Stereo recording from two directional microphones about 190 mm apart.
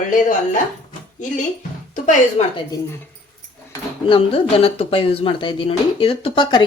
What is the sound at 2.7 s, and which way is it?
Speech, 20° left (ahead or behind).